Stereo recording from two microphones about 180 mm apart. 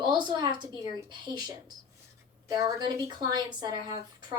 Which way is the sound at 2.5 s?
20° right (ahead or behind).